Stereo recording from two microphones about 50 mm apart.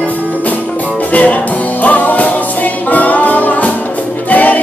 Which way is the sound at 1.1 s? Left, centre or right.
Left.